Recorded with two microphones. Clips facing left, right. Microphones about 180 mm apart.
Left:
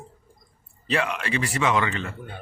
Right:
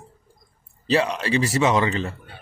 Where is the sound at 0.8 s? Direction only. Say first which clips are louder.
Right 5 dB; 35° right (ahead or behind).